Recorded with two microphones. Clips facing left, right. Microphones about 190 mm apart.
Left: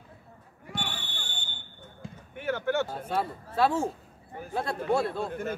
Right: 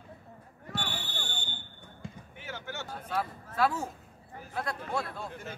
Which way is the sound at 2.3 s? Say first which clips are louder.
Left 15 dB; 55° left (ahead or behind).